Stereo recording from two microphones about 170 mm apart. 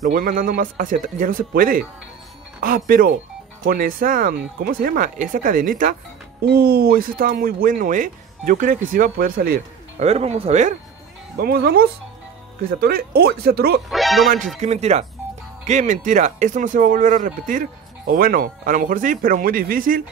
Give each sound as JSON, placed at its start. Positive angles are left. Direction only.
{"t": 0.0, "sound": "speech", "side_deg": -55}
{"t": 6.4, "sound": "speech", "side_deg": -65}
{"t": 9.9, "sound": "speech", "side_deg": -40}
{"t": 11.3, "sound": "speech", "side_deg": -65}
{"t": 13.8, "sound": "speech", "side_deg": 0}
{"t": 14.6, "sound": "speech", "side_deg": -40}